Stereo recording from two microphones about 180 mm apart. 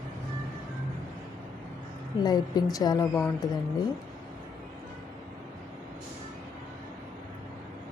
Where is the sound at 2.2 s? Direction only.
20° left (ahead or behind).